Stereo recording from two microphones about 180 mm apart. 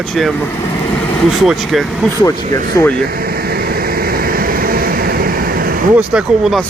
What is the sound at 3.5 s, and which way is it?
Vehicle, 55° right (ahead or behind).